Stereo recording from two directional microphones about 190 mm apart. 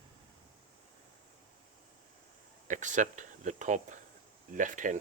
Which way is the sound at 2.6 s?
40° right (ahead or behind).